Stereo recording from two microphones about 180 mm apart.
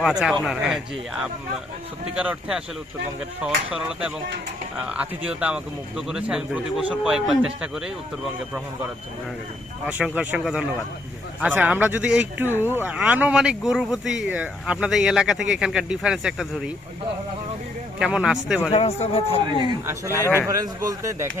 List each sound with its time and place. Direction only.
0.0 s speech: centre (ahead or behind)
2.1 s speech: 5° right (ahead or behind)
4.9 s speech: 5° right (ahead or behind)
9.8 s speech: 5° right (ahead or behind)
18.0 s speech: 5° right (ahead or behind)
18.7 s speech: 35° left (ahead or behind)
19.8 s speech: 15° right (ahead or behind)
20.1 s a man's voice: 15° left (ahead or behind)
20.5 s speech: 20° right (ahead or behind)